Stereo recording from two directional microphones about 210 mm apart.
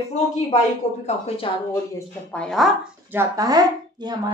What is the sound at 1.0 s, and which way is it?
Speech, 30° left (ahead or behind).